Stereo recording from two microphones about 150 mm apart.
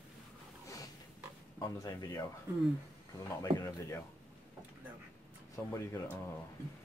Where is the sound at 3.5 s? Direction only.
40° right (ahead or behind).